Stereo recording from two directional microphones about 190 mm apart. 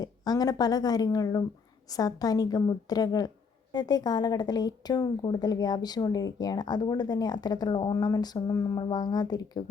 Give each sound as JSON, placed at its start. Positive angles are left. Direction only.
{"t": 0.0, "sound": "a woman's voice", "side_deg": 20}